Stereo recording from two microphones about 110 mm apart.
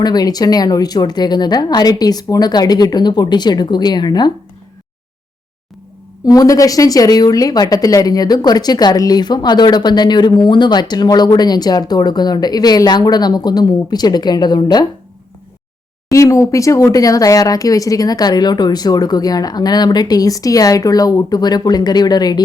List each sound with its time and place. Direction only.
0.0 s speech: 35° left (ahead or behind)
6.2 s speech: 35° left (ahead or behind)
16.1 s speech: 30° left (ahead or behind)